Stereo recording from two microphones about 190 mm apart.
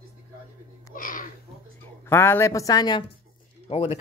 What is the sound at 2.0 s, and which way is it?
Speech, 10° left (ahead or behind).